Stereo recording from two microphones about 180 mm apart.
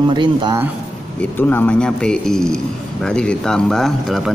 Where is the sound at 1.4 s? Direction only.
10° left (ahead or behind).